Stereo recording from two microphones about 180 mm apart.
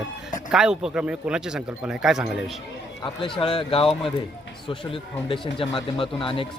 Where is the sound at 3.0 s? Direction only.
30° left (ahead or behind).